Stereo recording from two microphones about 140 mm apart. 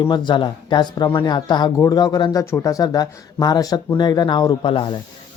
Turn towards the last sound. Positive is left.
turn(degrees=35)  # may be behind; listen again after turning